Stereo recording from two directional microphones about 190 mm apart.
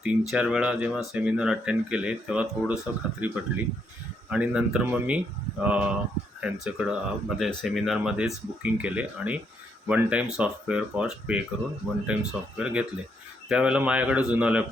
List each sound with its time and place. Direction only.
0.0 s speech: 5° right (ahead or behind)